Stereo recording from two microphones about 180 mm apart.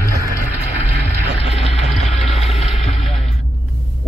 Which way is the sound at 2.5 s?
35° left (ahead or behind).